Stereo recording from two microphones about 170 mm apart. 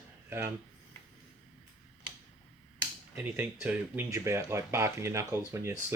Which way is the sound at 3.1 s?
10° right (ahead or behind).